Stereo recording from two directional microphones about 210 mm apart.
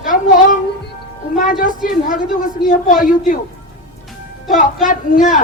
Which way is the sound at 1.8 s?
40° left (ahead or behind).